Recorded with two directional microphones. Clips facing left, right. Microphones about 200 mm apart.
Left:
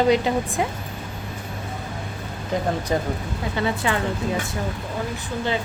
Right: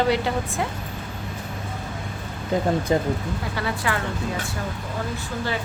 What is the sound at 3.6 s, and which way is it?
Speech, 20° left (ahead or behind).